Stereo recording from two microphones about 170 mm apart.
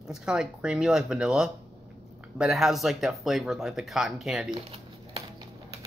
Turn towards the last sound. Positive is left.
turn(degrees=-25)  # may be behind; listen again after turning